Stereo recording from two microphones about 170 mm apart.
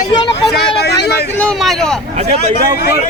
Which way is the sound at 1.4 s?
5° left (ahead or behind).